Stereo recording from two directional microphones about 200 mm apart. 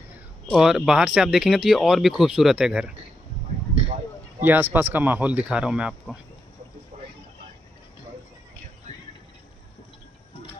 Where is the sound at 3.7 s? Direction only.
35° right (ahead or behind).